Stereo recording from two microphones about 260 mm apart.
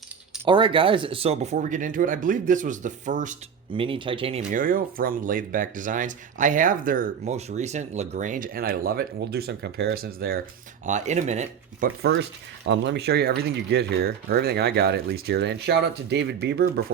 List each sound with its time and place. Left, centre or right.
0.4 s speech: centre; by 16.8 s right